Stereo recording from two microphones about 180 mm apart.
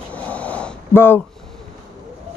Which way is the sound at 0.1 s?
5° left (ahead or behind).